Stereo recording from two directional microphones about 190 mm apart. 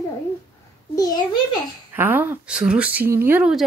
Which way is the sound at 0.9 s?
20° left (ahead or behind).